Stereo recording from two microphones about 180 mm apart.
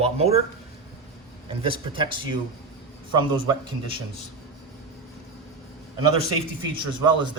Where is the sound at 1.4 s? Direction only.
30° right (ahead or behind).